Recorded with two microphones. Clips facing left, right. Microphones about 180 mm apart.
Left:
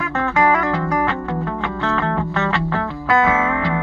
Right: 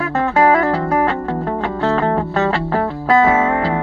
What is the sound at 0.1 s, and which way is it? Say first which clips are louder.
Music: right 4 dB; 35° right (ahead or behind).